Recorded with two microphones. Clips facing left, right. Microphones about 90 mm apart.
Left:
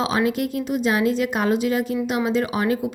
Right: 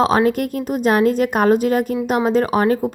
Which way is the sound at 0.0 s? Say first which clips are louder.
Right 6 dB; 45° right (ahead or behind).